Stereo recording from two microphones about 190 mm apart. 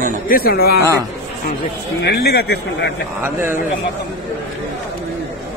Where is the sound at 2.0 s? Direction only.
60° left (ahead or behind).